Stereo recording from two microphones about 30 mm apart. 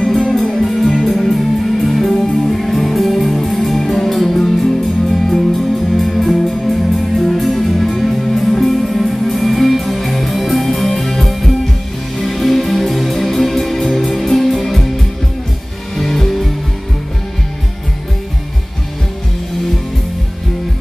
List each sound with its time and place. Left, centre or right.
0.2 s music: left
0.7 s music: centre
12.2 s music: centre
16.0 s music: centre